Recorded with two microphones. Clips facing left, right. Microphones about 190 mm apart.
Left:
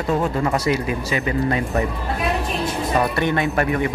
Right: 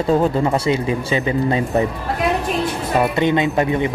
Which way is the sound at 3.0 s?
20° right (ahead or behind).